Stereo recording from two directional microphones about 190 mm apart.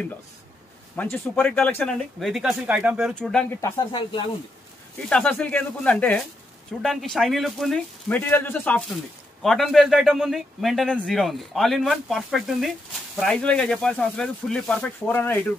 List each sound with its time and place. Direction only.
0.9 s speech: 10° left (ahead or behind)
2.1 s a man's voice: centre (ahead or behind)
3.6 s speech: 20° left (ahead or behind)
5.1 s a man's voice: 5° left (ahead or behind)